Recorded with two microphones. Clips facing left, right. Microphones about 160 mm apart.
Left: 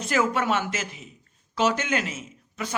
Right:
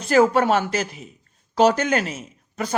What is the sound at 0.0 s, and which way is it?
Speech, 35° right (ahead or behind).